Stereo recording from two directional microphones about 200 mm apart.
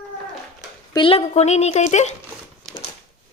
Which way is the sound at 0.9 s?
30° left (ahead or behind).